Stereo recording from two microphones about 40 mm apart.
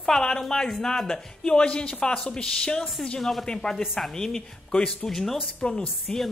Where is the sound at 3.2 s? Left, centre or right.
Centre.